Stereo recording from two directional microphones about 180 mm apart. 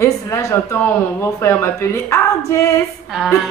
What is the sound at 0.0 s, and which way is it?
A woman's voice, 15° left (ahead or behind).